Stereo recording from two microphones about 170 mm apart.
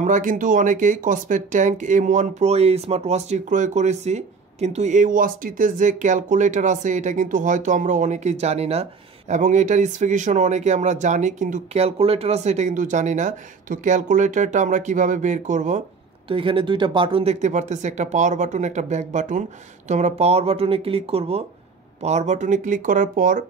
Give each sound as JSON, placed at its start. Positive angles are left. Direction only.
{"t": 0.0, "sound": "speech", "side_deg": -50}
{"t": 16.3, "sound": "speech", "side_deg": -30}